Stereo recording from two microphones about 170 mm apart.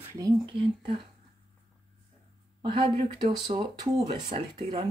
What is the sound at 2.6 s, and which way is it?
Speech, 30° right (ahead or behind).